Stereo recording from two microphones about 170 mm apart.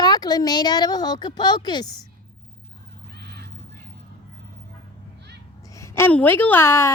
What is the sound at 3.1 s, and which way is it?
Crow, 75° right (ahead or behind).